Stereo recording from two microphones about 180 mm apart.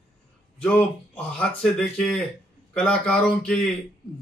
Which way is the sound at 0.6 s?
5° left (ahead or behind).